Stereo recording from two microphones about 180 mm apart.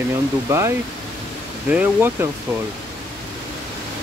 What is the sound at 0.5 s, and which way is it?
Speech, 15° right (ahead or behind).